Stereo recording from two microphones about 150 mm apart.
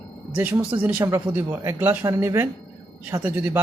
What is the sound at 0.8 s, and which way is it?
Speech, 15° right (ahead or behind).